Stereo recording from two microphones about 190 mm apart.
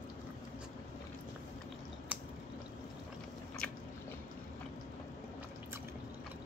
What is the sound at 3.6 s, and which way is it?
Biting, 5° left (ahead or behind).